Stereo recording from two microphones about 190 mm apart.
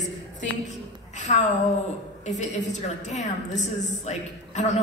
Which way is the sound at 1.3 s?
35° left (ahead or behind).